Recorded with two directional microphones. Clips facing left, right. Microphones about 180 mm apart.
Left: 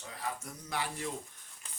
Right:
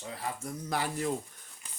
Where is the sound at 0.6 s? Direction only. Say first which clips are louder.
Right 5 dB; 45° right (ahead or behind).